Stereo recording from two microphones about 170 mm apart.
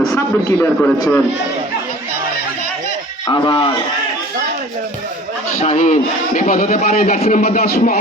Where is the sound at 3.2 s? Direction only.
30° left (ahead or behind).